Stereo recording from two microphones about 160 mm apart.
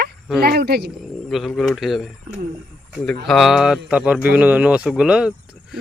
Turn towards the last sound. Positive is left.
turn(degrees=-5)  # may be behind; listen again after turning